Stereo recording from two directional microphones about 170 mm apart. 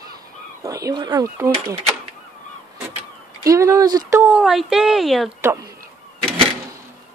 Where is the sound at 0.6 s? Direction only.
20° right (ahead or behind).